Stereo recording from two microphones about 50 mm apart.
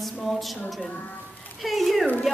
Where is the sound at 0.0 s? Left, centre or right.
Centre.